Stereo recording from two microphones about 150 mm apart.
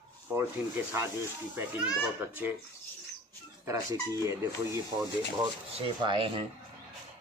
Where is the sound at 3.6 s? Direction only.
20° right (ahead or behind).